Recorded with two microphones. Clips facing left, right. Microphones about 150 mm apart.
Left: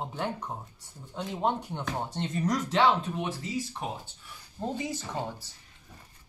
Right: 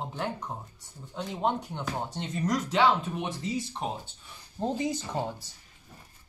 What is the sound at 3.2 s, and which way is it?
Speech, 20° right (ahead or behind).